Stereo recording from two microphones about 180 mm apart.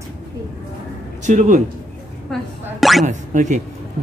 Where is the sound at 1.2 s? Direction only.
40° right (ahead or behind).